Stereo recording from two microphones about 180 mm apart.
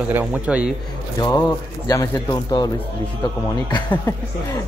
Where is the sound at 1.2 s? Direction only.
20° left (ahead or behind).